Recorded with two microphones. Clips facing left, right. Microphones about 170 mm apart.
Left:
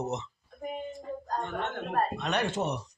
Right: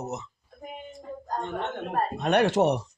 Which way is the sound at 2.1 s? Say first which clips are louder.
Right 8 dB; 55° right (ahead or behind).